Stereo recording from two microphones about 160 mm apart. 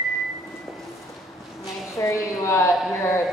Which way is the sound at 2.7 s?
Centre (ahead or behind).